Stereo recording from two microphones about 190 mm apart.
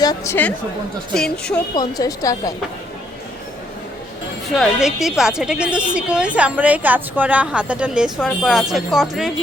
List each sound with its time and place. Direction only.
0.0 s a woman's voice: 20° left (ahead or behind)
1.1 s a woman's voice: 5° left (ahead or behind)
1.7 s a woman's voice: 20° left (ahead or behind)
4.5 s a woman's voice: centre (ahead or behind)